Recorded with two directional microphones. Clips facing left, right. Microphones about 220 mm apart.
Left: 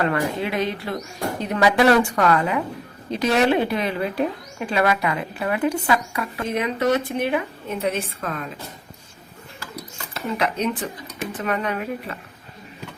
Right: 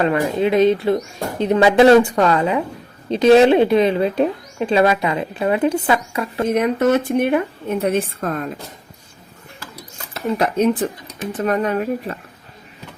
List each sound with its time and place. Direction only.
0.0 s speech: 20° right (ahead or behind)
6.4 s a woman's voice: 45° right (ahead or behind)
10.3 s a woman's voice: 45° right (ahead or behind)